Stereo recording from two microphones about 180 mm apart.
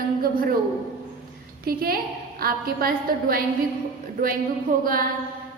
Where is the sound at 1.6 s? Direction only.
55° right (ahead or behind).